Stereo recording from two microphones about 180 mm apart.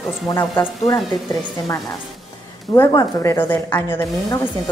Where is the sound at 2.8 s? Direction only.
20° left (ahead or behind).